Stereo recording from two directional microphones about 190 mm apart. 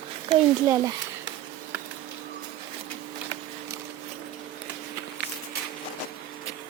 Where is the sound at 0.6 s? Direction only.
15° right (ahead or behind).